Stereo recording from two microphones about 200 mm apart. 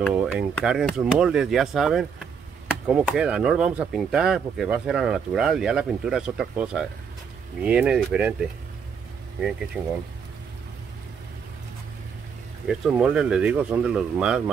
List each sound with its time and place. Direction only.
0.1 s speech: 5° right (ahead or behind)
9.8 s speech: 10° right (ahead or behind)
12.6 s speech: centre (ahead or behind)